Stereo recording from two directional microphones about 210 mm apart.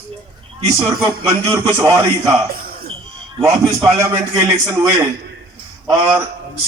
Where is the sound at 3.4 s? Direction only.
15° right (ahead or behind).